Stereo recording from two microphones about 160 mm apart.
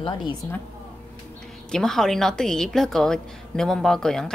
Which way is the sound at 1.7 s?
5° left (ahead or behind).